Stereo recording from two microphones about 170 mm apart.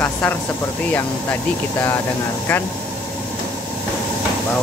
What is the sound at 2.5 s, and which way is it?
Speech, 10° left (ahead or behind).